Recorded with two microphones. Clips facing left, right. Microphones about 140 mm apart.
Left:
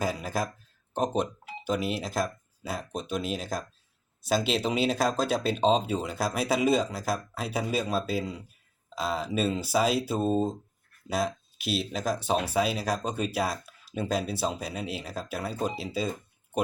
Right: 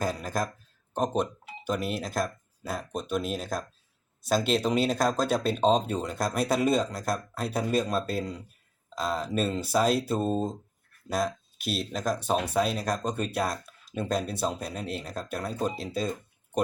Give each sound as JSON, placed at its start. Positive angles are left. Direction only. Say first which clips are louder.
{"t": 0.0, "sound": "speech", "louder": "even", "side_deg": 5}